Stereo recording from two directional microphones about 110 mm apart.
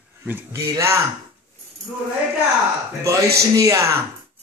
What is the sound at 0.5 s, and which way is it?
Speech, 25° right (ahead or behind).